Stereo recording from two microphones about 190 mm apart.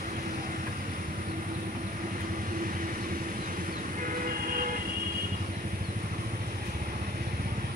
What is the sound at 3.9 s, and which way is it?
Train, 45° right (ahead or behind).